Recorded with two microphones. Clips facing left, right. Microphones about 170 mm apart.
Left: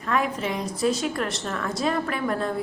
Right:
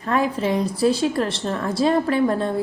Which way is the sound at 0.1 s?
30° right (ahead or behind).